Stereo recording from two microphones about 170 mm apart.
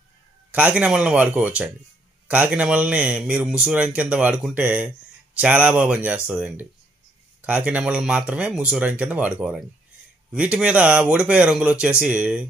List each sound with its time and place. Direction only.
0.5 s a man's voice: 10° right (ahead or behind)